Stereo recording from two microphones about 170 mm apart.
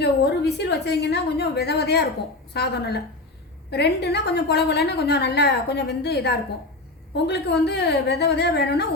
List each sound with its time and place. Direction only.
0.0 s a woman's voice: 75° left (ahead or behind)